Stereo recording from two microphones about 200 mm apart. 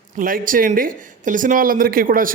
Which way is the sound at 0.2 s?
45° right (ahead or behind).